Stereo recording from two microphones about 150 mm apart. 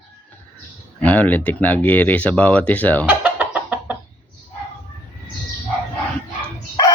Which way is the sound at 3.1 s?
10° right (ahead or behind).